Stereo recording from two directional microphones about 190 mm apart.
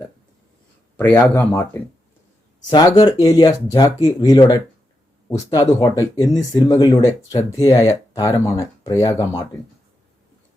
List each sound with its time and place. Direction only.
0.9 s speech: 10° left (ahead or behind)